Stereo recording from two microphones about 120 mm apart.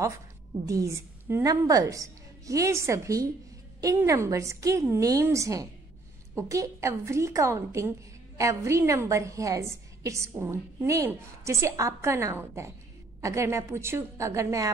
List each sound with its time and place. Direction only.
0.7 s a woman's voice: 25° right (ahead or behind)